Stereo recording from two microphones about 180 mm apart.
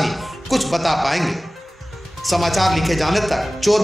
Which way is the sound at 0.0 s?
Centre (ahead or behind).